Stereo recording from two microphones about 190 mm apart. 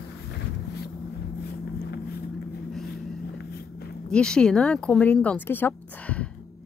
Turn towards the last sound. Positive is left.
turn(degrees=10)  # may be behind; listen again after turning